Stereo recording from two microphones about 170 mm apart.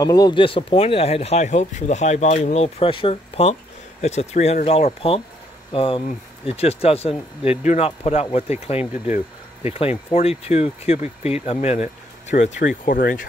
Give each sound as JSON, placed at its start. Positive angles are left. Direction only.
{"t": 0.0, "sound": "speech", "side_deg": 20}
{"t": 8.9, "sound": "speech", "side_deg": -10}
{"t": 9.7, "sound": "speech", "side_deg": 35}